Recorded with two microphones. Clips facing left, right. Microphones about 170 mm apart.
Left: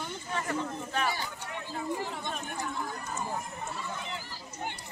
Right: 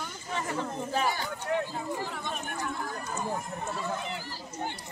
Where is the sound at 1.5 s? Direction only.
65° right (ahead or behind).